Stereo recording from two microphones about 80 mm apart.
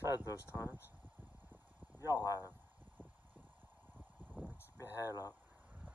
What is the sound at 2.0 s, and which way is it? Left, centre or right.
Speech, left.